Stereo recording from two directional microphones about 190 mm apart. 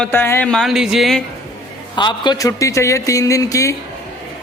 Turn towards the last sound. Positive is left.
turn(degrees=15)  # may be behind; listen again after turning